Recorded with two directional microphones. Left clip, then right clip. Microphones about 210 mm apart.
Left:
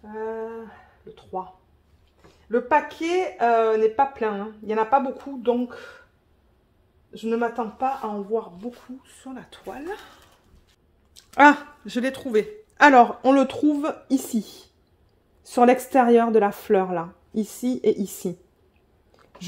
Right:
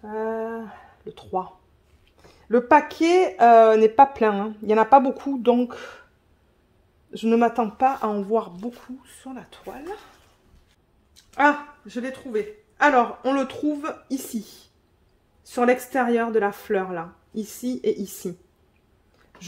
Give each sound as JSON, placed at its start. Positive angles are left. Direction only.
{"t": 0.0, "sound": "a sound", "side_deg": -55}
{"t": 2.4, "sound": "speech", "side_deg": -55}
{"t": 7.1, "sound": "speech", "side_deg": -50}
{"t": 8.5, "sound": "speech", "side_deg": -20}
{"t": 11.3, "sound": "speech", "side_deg": 55}
{"t": 13.2, "sound": "speech", "side_deg": 30}
{"t": 15.4, "sound": "speech", "side_deg": 30}